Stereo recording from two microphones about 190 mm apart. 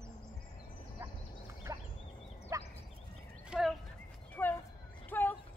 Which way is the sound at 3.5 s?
Centre (ahead or behind).